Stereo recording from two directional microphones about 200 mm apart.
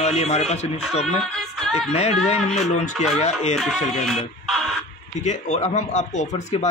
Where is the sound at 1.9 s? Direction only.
35° left (ahead or behind).